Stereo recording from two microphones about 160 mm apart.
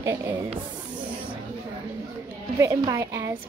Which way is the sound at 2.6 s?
20° right (ahead or behind).